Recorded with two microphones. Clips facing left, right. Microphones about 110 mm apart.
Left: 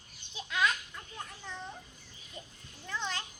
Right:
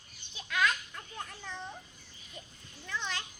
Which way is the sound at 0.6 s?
5° left (ahead or behind).